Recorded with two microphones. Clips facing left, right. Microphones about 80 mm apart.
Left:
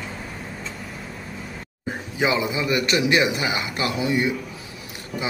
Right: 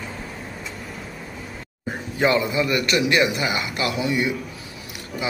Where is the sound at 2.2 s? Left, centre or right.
Centre; by 4.3 s left.